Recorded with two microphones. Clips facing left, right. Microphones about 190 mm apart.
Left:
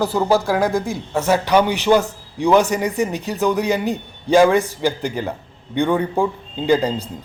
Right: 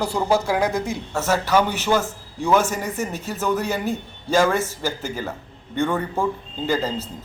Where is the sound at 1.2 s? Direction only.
15° left (ahead or behind).